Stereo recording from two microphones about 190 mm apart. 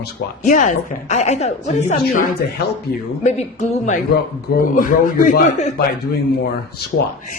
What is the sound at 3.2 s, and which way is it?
A man's voice, 35° left (ahead or behind).